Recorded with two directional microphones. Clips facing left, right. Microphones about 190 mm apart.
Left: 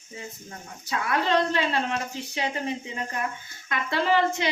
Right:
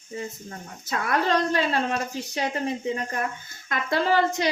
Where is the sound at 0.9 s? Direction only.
40° right (ahead or behind).